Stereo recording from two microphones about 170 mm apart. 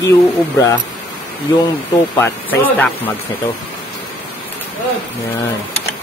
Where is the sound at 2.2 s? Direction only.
10° left (ahead or behind).